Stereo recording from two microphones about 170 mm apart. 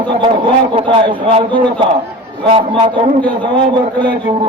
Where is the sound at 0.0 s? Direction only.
30° right (ahead or behind).